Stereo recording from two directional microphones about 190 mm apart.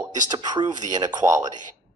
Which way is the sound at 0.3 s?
20° right (ahead or behind).